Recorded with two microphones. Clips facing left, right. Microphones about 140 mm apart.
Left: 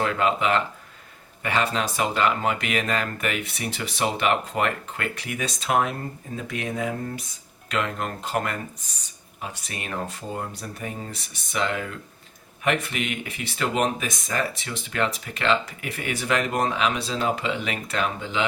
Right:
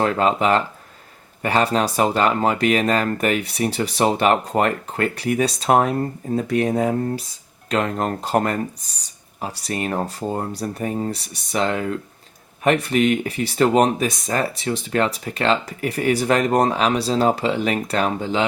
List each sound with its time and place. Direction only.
0.0 s speech: 35° right (ahead or behind)